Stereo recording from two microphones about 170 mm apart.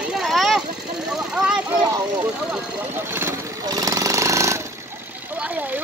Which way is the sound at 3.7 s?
20° right (ahead or behind).